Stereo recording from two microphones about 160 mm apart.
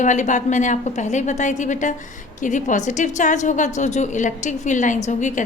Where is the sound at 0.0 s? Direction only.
50° left (ahead or behind).